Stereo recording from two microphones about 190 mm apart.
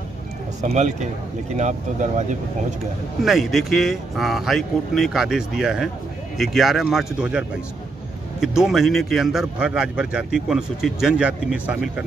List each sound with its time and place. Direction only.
0.6 s speech: 35° right (ahead or behind)
3.3 s a man's voice: centre (ahead or behind)